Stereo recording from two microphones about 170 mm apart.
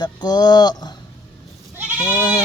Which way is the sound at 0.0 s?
25° left (ahead or behind).